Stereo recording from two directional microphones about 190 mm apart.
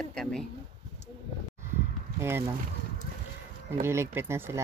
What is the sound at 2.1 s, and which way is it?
Speech, 15° right (ahead or behind).